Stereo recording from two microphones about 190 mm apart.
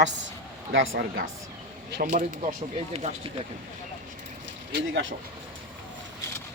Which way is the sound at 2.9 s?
30° right (ahead or behind).